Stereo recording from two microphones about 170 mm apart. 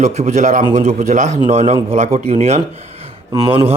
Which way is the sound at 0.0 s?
45° right (ahead or behind).